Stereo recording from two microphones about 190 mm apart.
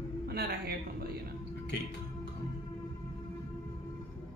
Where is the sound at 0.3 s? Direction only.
55° right (ahead or behind).